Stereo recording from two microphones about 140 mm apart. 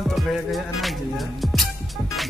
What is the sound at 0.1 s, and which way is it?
Music, centre (ahead or behind).